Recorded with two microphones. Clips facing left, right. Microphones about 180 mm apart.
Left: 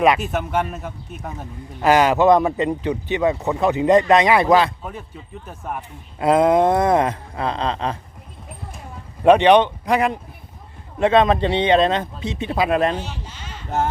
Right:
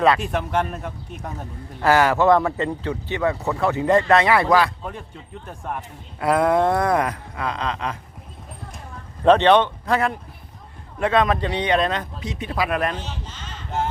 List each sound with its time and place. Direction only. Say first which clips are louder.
0.2 s a man's voice: left 1 dB; 5° left (ahead or behind)
1.8 s speech: left 2 dB; 20° left (ahead or behind)
4.8 s a man's voice: even; 5° left (ahead or behind)
6.1 s speech: left 3 dB; 20° left (ahead or behind)
9.2 s speech: left 2 dB; 15° left (ahead or behind)
13.0 s speech: left 2 dB; 10° left (ahead or behind)